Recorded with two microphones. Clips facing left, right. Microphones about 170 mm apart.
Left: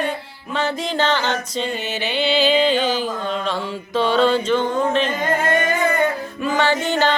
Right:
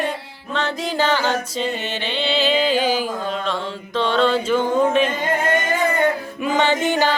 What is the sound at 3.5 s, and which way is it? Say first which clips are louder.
Music: left 1 dB; 5° left (ahead or behind).